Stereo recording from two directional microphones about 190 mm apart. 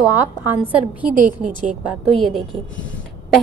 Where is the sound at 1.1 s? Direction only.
45° right (ahead or behind).